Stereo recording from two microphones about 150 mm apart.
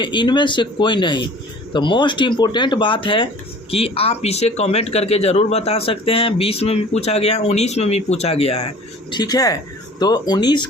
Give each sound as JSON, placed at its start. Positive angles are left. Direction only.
{"t": 0.0, "sound": "a man's voice", "side_deg": 30}
{"t": 9.1, "sound": "speech", "side_deg": 25}